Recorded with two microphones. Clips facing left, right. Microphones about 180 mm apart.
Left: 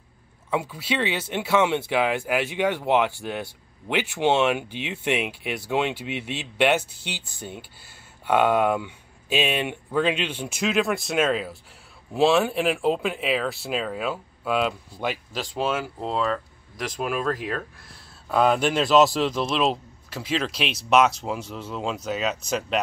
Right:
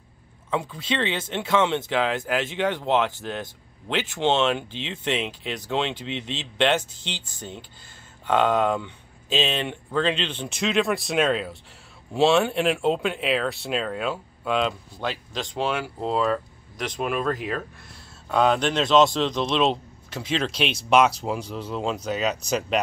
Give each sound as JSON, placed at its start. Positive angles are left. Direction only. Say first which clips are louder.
{"t": 0.5, "sound": "speech", "louder": "left 1 dB", "side_deg": 10}